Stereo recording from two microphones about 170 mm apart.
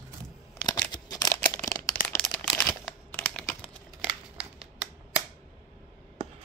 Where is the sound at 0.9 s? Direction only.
20° left (ahead or behind).